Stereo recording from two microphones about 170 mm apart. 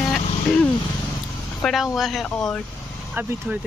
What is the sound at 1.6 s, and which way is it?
Speech, centre (ahead or behind).